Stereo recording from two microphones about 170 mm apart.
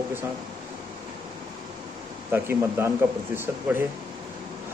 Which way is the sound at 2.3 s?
15° right (ahead or behind).